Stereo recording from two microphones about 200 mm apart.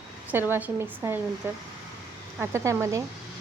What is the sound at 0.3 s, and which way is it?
Speech, 10° right (ahead or behind).